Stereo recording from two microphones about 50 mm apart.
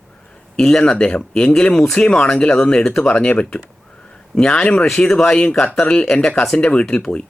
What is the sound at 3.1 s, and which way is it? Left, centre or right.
Speech, left.